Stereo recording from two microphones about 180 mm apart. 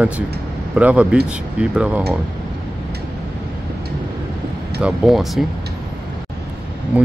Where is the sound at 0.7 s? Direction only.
5° right (ahead or behind).